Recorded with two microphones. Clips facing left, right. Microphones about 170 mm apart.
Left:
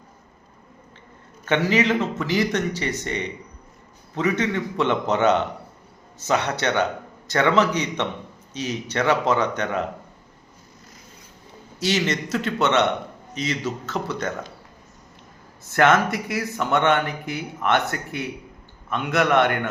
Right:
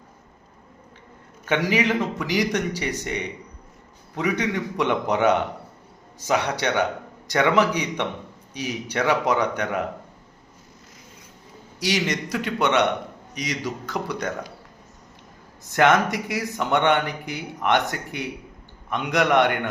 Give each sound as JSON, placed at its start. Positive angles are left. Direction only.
{"t": 1.5, "sound": "a man's voice", "side_deg": -10}
{"t": 11.8, "sound": "a man's voice", "side_deg": -15}
{"t": 15.6, "sound": "a man's voice", "side_deg": -15}